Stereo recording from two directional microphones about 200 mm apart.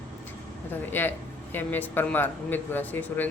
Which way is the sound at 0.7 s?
10° left (ahead or behind).